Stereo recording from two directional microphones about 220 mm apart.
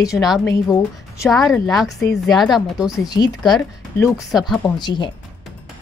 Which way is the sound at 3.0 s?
20° left (ahead or behind).